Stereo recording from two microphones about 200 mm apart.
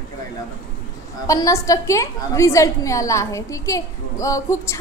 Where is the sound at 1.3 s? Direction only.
15° left (ahead or behind).